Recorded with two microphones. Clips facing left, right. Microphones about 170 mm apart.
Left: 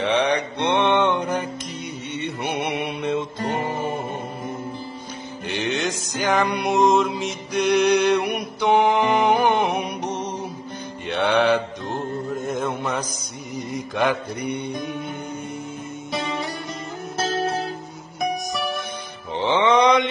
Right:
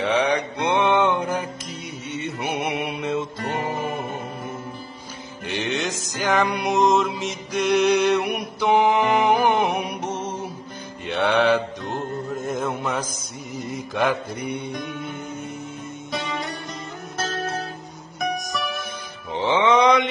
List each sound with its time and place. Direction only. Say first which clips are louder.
0.0 s mantra: even; centre (ahead or behind)
5.5 s mantra: left 1 dB; centre (ahead or behind)
16.1 s music: left 2 dB; 30° left (ahead or behind)
19.4 s music: even; centre (ahead or behind)